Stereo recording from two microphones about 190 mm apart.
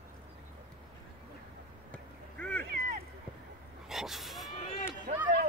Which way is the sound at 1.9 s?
10° left (ahead or behind).